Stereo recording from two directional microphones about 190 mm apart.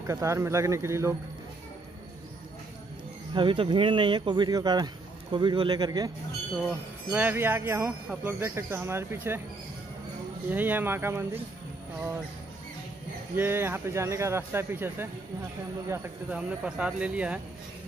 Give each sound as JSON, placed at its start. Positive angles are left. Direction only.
{"t": 0.0, "sound": "speech", "side_deg": -15}
{"t": 3.3, "sound": "speech", "side_deg": -25}
{"t": 7.1, "sound": "speech", "side_deg": -10}
{"t": 10.5, "sound": "speech", "side_deg": -10}
{"t": 13.4, "sound": "speech", "side_deg": -10}